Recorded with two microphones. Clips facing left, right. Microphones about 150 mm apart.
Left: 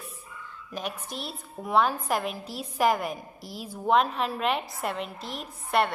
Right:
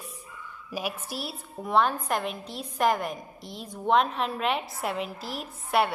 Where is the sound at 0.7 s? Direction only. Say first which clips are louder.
Right 2 dB; 5° right (ahead or behind).